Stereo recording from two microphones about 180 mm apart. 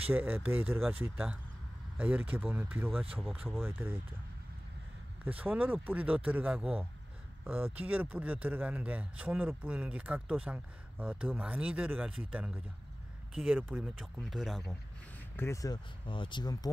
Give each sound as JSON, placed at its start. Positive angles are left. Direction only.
{"t": 0.0, "sound": "speech", "side_deg": -10}
{"t": 5.2, "sound": "speech", "side_deg": -10}
{"t": 15.3, "sound": "speech", "side_deg": 15}